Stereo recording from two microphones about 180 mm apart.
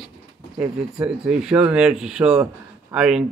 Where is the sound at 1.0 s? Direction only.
5° right (ahead or behind).